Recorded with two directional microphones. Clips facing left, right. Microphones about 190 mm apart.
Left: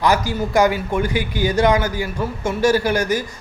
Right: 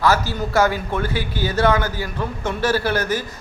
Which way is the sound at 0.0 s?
15° left (ahead or behind).